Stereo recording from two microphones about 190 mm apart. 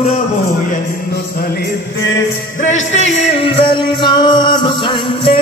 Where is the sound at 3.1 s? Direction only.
70° left (ahead or behind).